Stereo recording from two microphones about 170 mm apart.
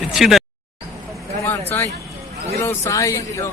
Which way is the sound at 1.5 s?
15° left (ahead or behind).